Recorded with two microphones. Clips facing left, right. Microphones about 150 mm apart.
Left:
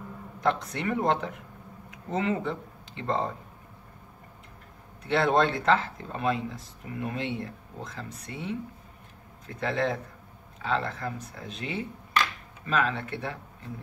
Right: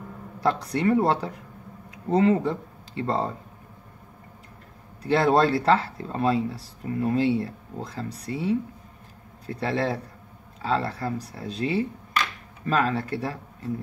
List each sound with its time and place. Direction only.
0.4 s speech: 35° right (ahead or behind)
5.0 s speech: 35° right (ahead or behind)